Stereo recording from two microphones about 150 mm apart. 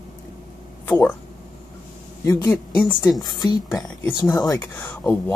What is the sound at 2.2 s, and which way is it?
A woman's voice, 20° left (ahead or behind).